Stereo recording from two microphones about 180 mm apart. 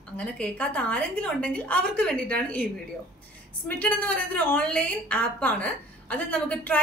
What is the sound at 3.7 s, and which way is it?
A woman's voice, 10° left (ahead or behind).